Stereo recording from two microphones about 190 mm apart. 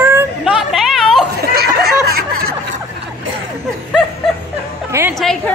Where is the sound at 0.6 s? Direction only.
Centre (ahead or behind).